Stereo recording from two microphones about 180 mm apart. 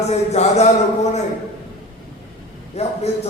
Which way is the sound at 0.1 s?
40° left (ahead or behind).